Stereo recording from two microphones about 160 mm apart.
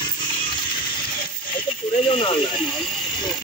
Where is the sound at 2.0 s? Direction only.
35° left (ahead or behind).